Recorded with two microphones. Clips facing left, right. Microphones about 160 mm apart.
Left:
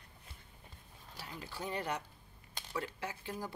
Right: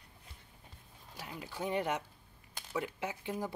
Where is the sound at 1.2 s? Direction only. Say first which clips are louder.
Right 4 dB; 15° right (ahead or behind).